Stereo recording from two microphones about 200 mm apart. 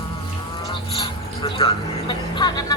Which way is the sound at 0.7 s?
25° left (ahead or behind).